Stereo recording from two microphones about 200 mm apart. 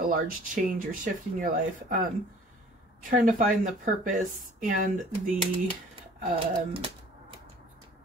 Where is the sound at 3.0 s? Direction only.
40° right (ahead or behind).